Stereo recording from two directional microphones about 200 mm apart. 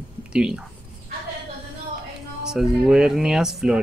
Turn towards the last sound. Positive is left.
turn(degrees=-5)  # may be behind; listen again after turning